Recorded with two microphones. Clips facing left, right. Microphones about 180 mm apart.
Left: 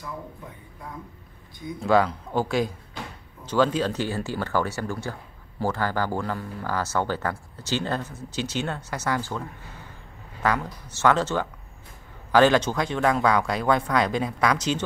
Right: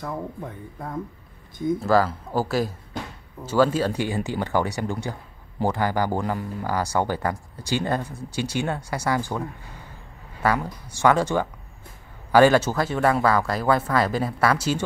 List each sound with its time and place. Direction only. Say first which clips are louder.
0.0 s speech: right 6 dB; 50° right (ahead or behind)
1.8 s speech: left 2 dB; centre (ahead or behind)
10.4 s speech: right 2 dB; 10° right (ahead or behind)